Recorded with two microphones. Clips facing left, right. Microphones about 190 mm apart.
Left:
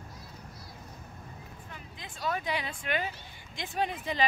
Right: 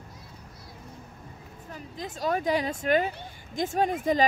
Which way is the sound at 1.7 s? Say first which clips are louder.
Right 13 dB; 40° right (ahead or behind).